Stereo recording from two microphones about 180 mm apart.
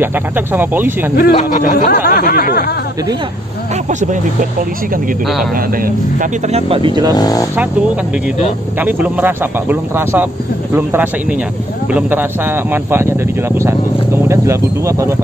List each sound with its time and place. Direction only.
0.0 s speech: 10° right (ahead or behind)
1.1 s snicker: 60° left (ahead or behind)
1.4 s speech: 45° left (ahead or behind)
1.9 s snicker: 60° left (ahead or behind)
5.8 s speech: 50° right (ahead or behind)
6.5 s speech: 30° right (ahead or behind)
7.2 s speech: 20° left (ahead or behind)
8.7 s speech: 10° right (ahead or behind)
14.2 s speech: 15° right (ahead or behind)